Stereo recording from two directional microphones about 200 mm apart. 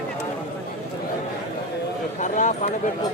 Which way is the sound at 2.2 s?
40° left (ahead or behind).